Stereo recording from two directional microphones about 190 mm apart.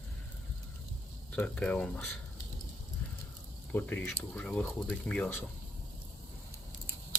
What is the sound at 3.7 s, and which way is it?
Speech, 10° left (ahead or behind).